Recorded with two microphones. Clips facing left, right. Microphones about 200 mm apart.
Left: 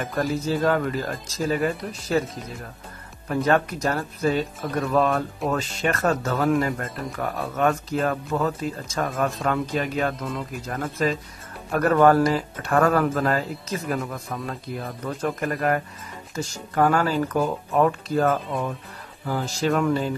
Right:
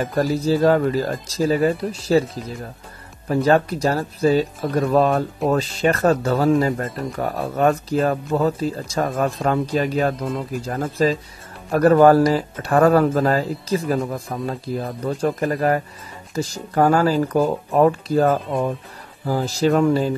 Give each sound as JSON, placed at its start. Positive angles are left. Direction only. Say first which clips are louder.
{"t": 0.0, "sound": "speech", "louder": "right 5 dB", "side_deg": -35}
{"t": 3.3, "sound": "speech", "louder": "right 4 dB", "side_deg": -30}